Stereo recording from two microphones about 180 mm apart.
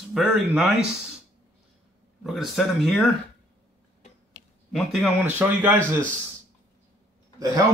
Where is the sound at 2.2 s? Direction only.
Centre (ahead or behind).